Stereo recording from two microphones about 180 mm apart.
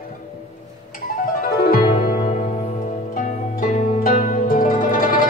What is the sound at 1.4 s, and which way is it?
Music, 55° left (ahead or behind).